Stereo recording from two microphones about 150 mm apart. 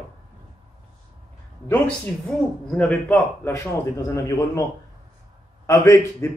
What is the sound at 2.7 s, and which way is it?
A man's voice, 10° left (ahead or behind).